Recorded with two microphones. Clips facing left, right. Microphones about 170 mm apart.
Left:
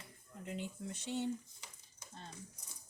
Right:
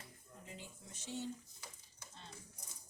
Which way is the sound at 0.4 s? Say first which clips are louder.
Left 11 dB; 65° left (ahead or behind).